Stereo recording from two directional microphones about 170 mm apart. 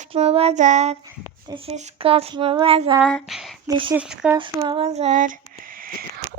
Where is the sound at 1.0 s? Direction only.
25° right (ahead or behind).